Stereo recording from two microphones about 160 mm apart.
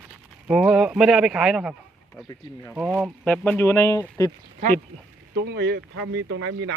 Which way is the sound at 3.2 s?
10° left (ahead or behind).